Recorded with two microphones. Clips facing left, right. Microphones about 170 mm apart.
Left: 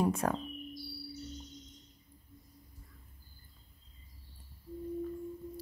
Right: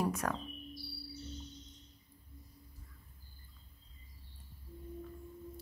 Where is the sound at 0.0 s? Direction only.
30° left (ahead or behind).